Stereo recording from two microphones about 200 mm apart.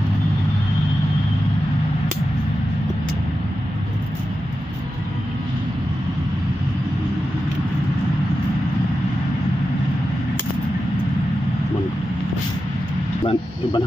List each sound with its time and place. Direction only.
13.2 s vehicle: 25° left (ahead or behind)